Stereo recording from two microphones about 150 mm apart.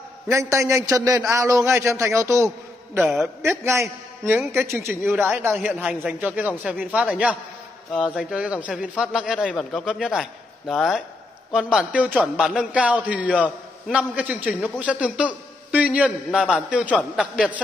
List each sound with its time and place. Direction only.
0.3 s a man's voice: 20° right (ahead or behind)